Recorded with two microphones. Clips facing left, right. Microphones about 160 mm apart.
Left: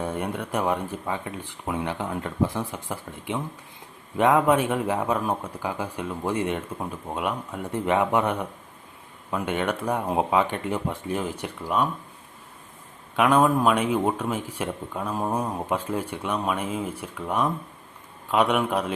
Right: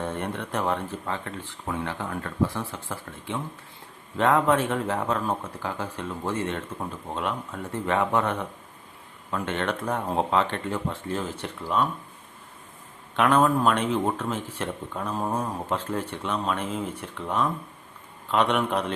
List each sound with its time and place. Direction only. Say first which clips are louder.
0.0 s speech: left 2 dB; 10° left (ahead or behind)
13.1 s speech: left 1 dB; 10° left (ahead or behind)